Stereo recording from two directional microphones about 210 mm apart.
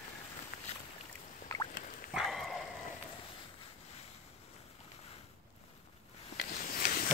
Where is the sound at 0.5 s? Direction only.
45° left (ahead or behind).